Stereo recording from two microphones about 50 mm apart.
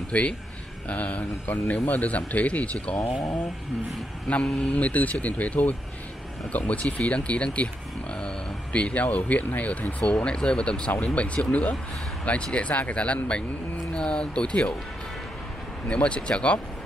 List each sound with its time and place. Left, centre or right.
0.1 s a man's voice: left
4.3 s a man's voice: left
8.7 s speech: left
15.9 s speech: left